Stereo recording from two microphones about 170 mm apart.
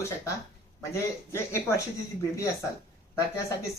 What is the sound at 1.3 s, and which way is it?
Speech, 15° left (ahead or behind).